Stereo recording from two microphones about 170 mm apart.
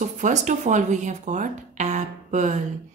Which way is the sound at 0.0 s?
45° right (ahead or behind).